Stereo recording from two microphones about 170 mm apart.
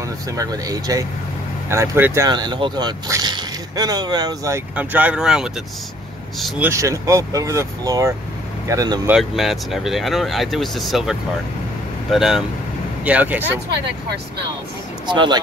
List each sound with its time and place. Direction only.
0.4 s speech: 20° right (ahead or behind)
2.2 s speech: 25° right (ahead or behind)
4.7 s speech: 10° right (ahead or behind)
6.6 s speech: 15° right (ahead or behind)
9.2 s speech: centre (ahead or behind)
15.0 s speech: 25° right (ahead or behind)